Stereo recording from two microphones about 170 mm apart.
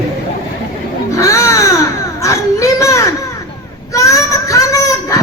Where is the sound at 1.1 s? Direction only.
20° left (ahead or behind).